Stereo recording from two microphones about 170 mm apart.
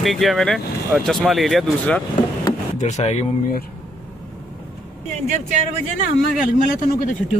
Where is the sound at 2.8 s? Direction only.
45° left (ahead or behind).